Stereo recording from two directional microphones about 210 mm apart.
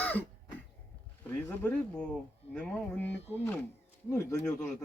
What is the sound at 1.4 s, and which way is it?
Speech, 10° left (ahead or behind).